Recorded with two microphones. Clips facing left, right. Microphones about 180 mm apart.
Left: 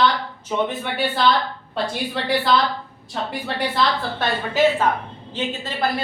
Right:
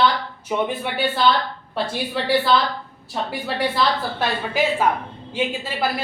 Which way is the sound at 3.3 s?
5° right (ahead or behind).